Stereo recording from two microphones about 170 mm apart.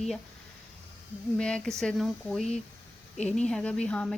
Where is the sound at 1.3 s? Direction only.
5° left (ahead or behind).